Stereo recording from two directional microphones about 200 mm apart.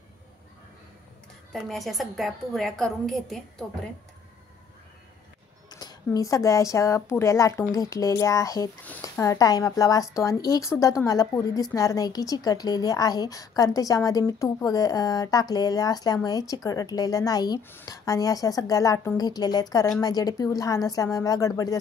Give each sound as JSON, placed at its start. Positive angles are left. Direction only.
{"t": 1.5, "sound": "a woman's voice", "side_deg": 0}
{"t": 5.7, "sound": "a sound", "side_deg": 20}
{"t": 6.1, "sound": "a woman's voice", "side_deg": 15}